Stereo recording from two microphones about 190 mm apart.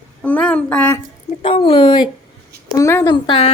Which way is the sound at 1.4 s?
25° left (ahead or behind).